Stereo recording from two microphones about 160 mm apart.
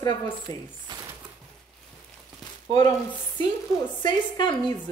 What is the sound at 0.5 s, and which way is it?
Speech, 25° left (ahead or behind).